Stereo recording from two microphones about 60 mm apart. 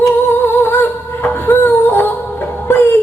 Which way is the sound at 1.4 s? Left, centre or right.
Left.